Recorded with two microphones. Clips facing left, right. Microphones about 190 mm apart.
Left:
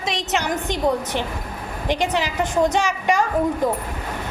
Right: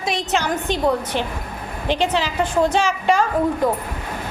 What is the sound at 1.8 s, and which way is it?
A woman's voice, 15° left (ahead or behind).